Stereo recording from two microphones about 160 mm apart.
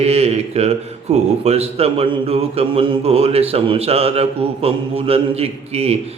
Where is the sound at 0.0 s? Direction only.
40° right (ahead or behind).